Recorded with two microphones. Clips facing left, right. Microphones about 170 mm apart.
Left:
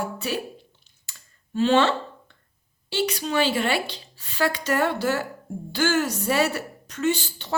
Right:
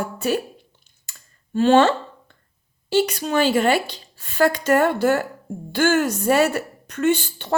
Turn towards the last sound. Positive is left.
turn(degrees=-55)  # may be behind; listen again after turning